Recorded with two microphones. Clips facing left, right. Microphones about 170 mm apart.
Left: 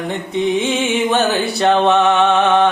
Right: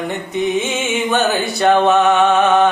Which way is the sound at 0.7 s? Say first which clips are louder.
Left 2 dB; centre (ahead or behind).